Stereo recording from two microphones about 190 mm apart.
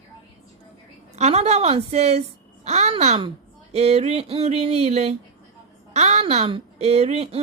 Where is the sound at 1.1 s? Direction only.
35° right (ahead or behind).